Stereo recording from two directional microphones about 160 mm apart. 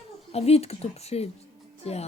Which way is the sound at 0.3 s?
40° left (ahead or behind).